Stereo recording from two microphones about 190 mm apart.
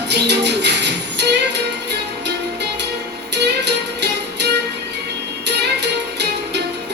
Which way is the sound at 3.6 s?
65° right (ahead or behind).